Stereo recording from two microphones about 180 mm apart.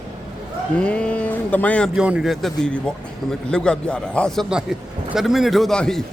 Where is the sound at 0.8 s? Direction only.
5° left (ahead or behind).